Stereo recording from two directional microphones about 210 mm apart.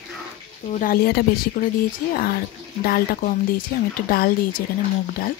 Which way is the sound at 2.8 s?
45° left (ahead or behind).